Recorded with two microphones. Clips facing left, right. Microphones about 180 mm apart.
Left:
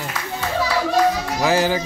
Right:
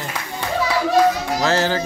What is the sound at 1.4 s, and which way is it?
Music, 10° left (ahead or behind).